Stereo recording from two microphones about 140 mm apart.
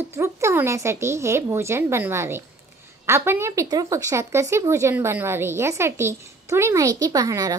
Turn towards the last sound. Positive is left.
turn(degrees=-25)  # may be behind; listen again after turning